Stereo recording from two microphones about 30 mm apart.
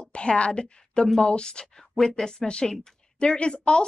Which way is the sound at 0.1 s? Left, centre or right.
Left.